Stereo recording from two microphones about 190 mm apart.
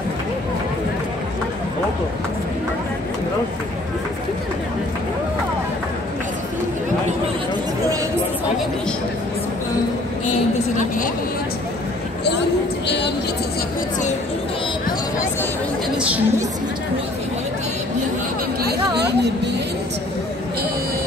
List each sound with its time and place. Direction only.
12.8 s a woman's voice: 65° left (ahead or behind)
16.0 s speech: 5° right (ahead or behind)
18.6 s chatter: 60° right (ahead or behind)